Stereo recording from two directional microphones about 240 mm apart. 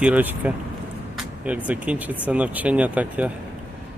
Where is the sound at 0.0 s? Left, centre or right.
Centre.